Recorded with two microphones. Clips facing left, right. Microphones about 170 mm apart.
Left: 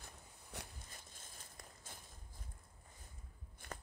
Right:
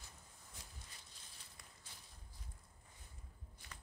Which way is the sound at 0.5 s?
70° left (ahead or behind).